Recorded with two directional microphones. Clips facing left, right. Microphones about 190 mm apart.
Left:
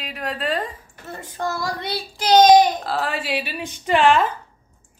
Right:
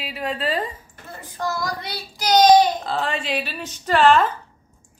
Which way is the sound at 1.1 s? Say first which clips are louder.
Left 1 dB; 25° left (ahead or behind).